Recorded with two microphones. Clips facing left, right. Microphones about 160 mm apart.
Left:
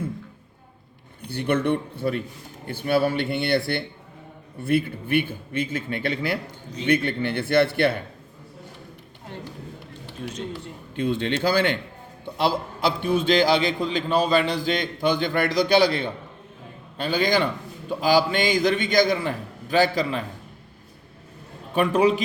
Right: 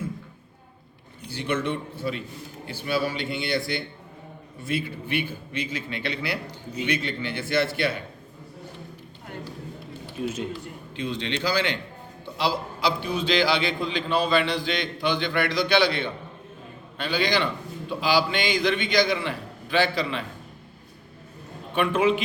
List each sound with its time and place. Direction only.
1.2 s a man's voice: 55° left (ahead or behind)
10.2 s speech: 10° right (ahead or behind)
10.9 s a man's voice: 50° left (ahead or behind)
21.8 s a man's voice: 40° left (ahead or behind)